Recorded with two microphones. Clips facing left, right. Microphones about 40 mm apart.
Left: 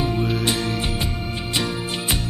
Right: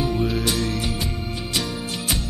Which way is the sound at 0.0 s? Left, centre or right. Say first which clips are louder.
Even; centre.